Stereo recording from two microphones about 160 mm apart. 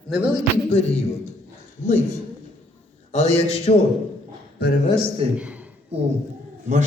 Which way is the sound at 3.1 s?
40° left (ahead or behind).